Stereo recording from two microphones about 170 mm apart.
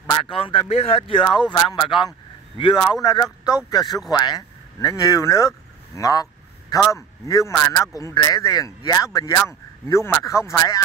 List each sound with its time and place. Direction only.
0.3 s speech: 30° left (ahead or behind)